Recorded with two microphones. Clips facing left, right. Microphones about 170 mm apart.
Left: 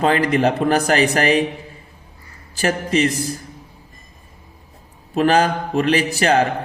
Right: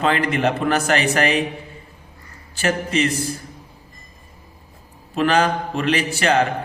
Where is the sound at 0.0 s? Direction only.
40° left (ahead or behind).